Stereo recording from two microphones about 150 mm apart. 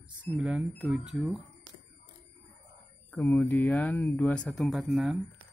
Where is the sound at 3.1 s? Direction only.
5° left (ahead or behind).